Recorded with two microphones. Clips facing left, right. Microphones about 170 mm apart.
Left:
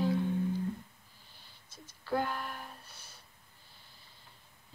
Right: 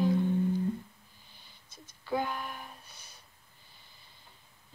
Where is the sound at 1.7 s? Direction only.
5° left (ahead or behind).